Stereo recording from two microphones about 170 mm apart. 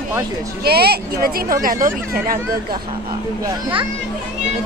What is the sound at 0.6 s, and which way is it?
A child's voice, 70° right (ahead or behind).